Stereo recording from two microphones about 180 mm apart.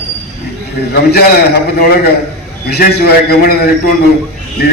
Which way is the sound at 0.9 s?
60° left (ahead or behind).